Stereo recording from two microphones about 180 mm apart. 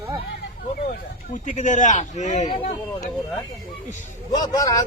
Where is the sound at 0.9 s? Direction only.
45° left (ahead or behind).